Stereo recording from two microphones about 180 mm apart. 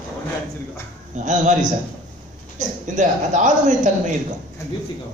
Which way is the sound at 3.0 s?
45° right (ahead or behind).